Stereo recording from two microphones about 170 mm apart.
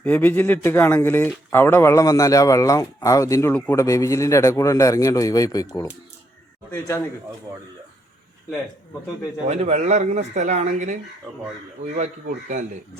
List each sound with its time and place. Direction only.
0.0 s a man's voice: 10° left (ahead or behind)
6.7 s speech: 15° left (ahead or behind)
9.5 s speech: 40° right (ahead or behind)